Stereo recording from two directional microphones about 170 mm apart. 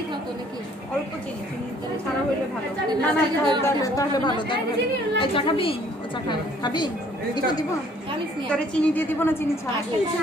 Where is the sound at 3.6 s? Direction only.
20° left (ahead or behind).